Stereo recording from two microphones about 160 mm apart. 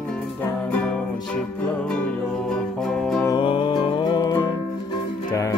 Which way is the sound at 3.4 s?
30° left (ahead or behind).